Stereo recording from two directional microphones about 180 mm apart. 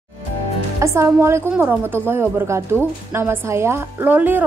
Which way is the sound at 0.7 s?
15° right (ahead or behind).